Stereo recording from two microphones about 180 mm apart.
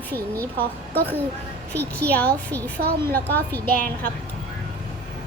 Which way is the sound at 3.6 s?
55° right (ahead or behind).